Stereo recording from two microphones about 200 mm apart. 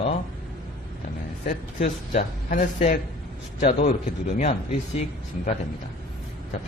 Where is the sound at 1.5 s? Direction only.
40° left (ahead or behind).